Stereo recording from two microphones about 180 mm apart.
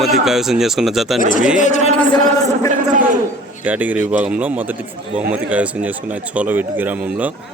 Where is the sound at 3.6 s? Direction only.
10° right (ahead or behind).